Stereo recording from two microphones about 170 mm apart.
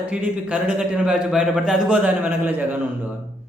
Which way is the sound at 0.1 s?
10° right (ahead or behind).